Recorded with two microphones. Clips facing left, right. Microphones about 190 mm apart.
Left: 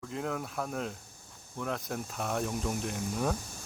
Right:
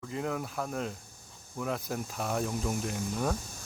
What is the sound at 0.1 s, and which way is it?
Speech, centre (ahead or behind).